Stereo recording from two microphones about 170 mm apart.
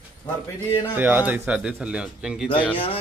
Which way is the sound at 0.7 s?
10° right (ahead or behind).